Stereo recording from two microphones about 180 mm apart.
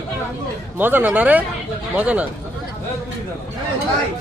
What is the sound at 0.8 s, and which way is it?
A man's voice, 10° right (ahead or behind).